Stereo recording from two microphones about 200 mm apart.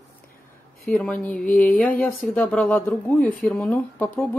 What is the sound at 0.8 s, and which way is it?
Speech, 5° left (ahead or behind).